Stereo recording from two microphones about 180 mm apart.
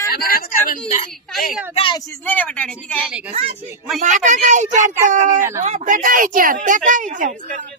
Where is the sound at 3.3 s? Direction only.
40° right (ahead or behind).